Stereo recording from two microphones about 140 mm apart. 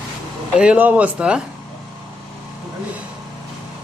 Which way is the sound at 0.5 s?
5° right (ahead or behind).